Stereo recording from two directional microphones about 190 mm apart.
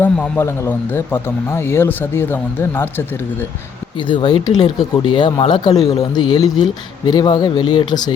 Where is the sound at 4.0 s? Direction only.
25° left (ahead or behind).